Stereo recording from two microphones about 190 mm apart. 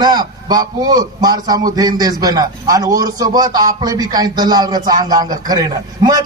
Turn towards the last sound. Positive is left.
turn(degrees=-20)  # may be behind; listen again after turning